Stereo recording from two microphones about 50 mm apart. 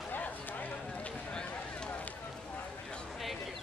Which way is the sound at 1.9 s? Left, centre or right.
Left.